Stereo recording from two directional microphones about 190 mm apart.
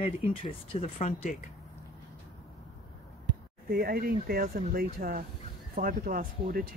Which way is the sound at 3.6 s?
55° right (ahead or behind).